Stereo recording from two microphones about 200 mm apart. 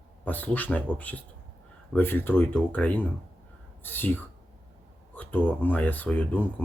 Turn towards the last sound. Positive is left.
turn(degrees=5)  # may be behind; listen again after turning